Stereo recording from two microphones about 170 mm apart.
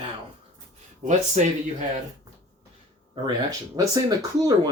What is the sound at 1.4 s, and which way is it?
Speech, 45° right (ahead or behind).